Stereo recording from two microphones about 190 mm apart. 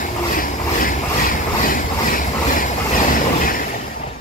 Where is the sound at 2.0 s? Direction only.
45° left (ahead or behind).